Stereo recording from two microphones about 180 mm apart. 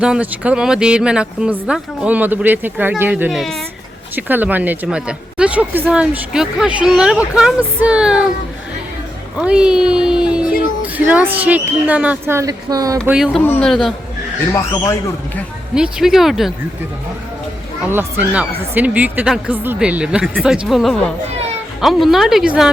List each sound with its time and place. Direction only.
0.0 s speech: 5° right (ahead or behind)
4.1 s a woman's voice: 10° right (ahead or behind)
9.4 s a woman's voice: 5° right (ahead or behind)
13.1 s speech: 5° right (ahead or behind)
13.4 s speech: 10° left (ahead or behind)
14.5 s speech: 15° left (ahead or behind)
15.7 s speech: 5° right (ahead or behind)
17.9 s a woman's voice: 10° right (ahead or behind)